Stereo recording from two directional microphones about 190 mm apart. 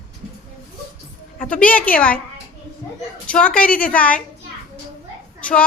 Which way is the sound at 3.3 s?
5° left (ahead or behind).